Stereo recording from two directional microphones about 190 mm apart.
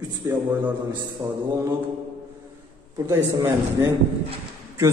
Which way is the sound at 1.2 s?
20° right (ahead or behind).